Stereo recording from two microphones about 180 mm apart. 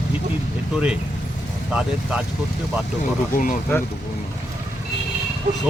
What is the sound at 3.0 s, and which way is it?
Speech, 45° left (ahead or behind).